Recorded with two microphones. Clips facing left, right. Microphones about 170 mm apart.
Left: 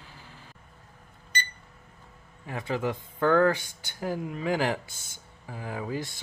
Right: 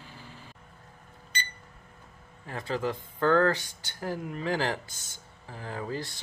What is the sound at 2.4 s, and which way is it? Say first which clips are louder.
Speech: left 1 dB; 15° left (ahead or behind).